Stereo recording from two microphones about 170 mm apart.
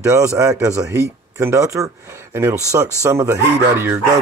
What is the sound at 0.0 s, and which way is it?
Speech, 20° right (ahead or behind).